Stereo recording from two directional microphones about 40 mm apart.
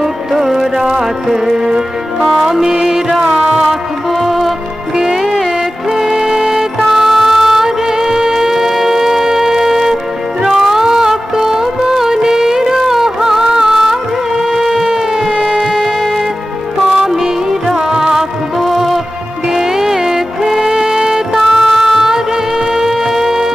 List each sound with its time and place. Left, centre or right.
0.0 s music: centre
3.6 s music: centre
14.4 s a sound: centre
15.3 s music: centre
16.9 s music: centre
18.6 s music: centre